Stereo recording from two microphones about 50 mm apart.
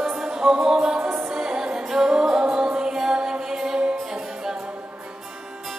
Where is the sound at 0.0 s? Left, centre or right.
Centre.